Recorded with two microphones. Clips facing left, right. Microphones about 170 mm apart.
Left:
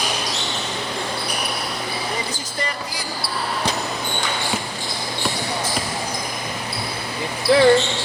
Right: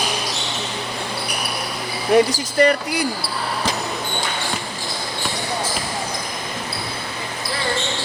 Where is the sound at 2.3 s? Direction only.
65° right (ahead or behind).